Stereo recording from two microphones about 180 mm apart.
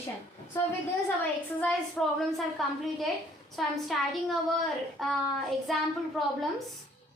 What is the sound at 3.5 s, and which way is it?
A woman's voice, centre (ahead or behind).